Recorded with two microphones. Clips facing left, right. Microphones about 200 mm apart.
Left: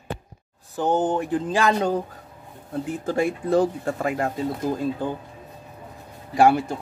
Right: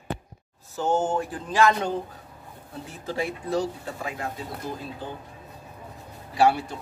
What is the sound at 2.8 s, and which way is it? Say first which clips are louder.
Speech: left 6 dB; 50° left (ahead or behind).